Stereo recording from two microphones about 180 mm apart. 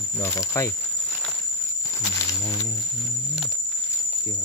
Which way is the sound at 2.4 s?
20° left (ahead or behind).